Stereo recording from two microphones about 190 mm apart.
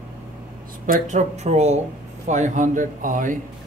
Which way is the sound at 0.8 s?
45° right (ahead or behind).